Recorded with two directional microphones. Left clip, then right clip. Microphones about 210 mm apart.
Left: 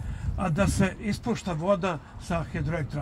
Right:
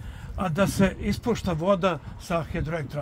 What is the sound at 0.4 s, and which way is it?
A man's voice, 55° right (ahead or behind).